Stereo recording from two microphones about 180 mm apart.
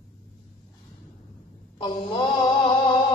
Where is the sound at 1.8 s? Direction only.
25° left (ahead or behind).